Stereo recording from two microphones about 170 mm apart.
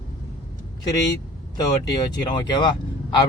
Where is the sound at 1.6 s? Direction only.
25° left (ahead or behind).